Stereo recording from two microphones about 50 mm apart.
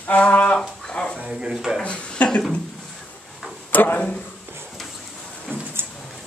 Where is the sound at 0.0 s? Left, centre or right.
Left.